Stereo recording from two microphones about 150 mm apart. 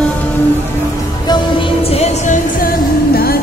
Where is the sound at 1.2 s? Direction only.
30° left (ahead or behind).